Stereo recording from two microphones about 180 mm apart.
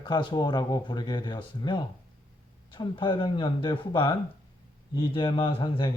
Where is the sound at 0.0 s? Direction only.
25° left (ahead or behind).